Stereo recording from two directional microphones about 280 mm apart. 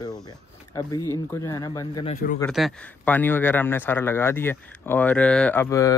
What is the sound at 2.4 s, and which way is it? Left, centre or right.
Speech, centre.